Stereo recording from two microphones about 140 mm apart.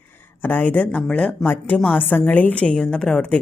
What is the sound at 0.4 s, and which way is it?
A woman's voice, 10° left (ahead or behind).